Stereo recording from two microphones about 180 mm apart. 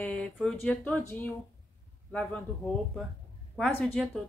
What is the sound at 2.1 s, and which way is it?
Speech, 5° left (ahead or behind).